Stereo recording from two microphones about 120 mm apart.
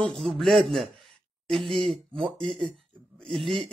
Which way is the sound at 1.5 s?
Centre (ahead or behind).